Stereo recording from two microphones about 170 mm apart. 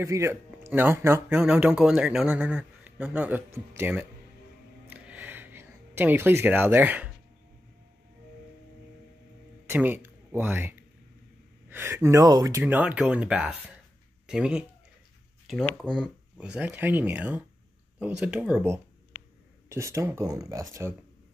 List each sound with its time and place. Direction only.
0.0 s speech: 15° right (ahead or behind)
4.8 s a sound: 10° right (ahead or behind)
9.7 s speech: 10° right (ahead or behind)
15.8 s speech: 5° right (ahead or behind)
19.1 s a sound: 15° left (ahead or behind)
19.7 s speech: 15° right (ahead or behind)